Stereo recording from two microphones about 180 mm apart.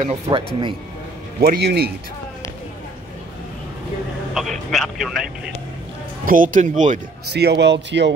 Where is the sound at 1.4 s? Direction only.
60° right (ahead or behind).